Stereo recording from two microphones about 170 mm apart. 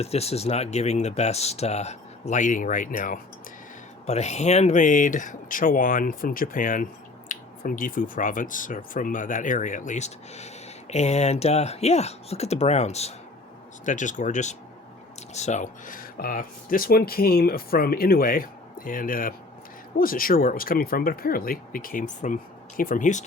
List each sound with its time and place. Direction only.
0.0 s speech: 35° left (ahead or behind)
4.0 s speech: 40° left (ahead or behind)